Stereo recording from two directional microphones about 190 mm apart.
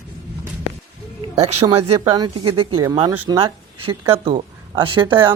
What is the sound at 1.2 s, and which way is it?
Speech, 35° right (ahead or behind).